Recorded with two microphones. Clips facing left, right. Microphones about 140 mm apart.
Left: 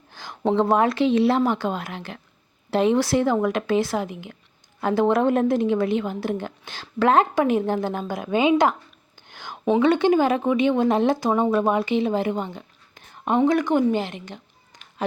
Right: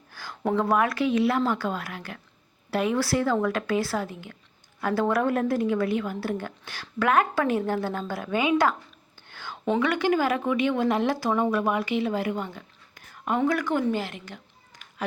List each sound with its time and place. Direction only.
0.1 s a woman's voice: 20° left (ahead or behind)